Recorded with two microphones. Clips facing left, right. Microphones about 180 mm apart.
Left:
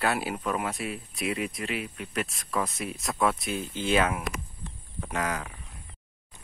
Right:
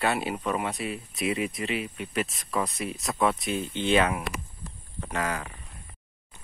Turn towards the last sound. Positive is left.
turn(degrees=0)  # may be behind; listen again after turning